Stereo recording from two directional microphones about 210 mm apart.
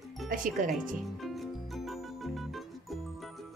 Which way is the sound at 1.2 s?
Centre (ahead or behind).